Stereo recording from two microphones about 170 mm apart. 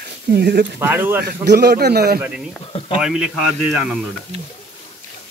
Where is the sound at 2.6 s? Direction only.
35° left (ahead or behind).